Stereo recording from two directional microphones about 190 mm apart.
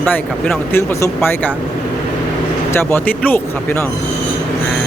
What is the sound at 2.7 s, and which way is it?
Speech, 10° left (ahead or behind).